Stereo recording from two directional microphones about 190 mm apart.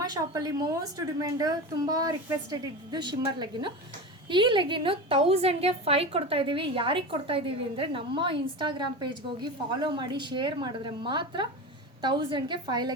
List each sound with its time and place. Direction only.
0.0 s a woman's voice: 20° right (ahead or behind)